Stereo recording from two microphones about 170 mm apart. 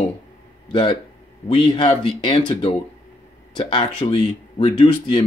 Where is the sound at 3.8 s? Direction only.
30° left (ahead or behind).